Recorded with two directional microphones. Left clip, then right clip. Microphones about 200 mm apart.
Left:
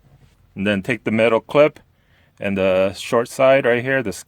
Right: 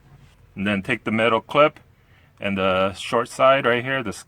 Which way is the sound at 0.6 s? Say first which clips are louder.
Left 3 dB; 50° left (ahead or behind).